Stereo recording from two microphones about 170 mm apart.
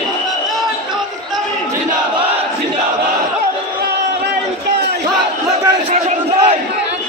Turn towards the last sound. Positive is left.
turn(degrees=-40)  # may be behind; listen again after turning